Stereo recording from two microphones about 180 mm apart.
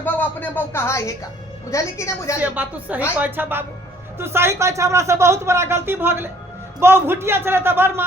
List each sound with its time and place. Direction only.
0.0 s a woman's voice: 10° left (ahead or behind)
2.4 s speech: 10° right (ahead or behind)